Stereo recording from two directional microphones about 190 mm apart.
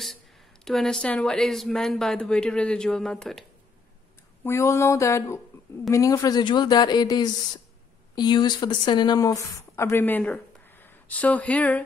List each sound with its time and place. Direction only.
0.7 s speech: centre (ahead or behind)
4.4 s a sound: 15° left (ahead or behind)
5.9 s a woman's voice: 15° left (ahead or behind)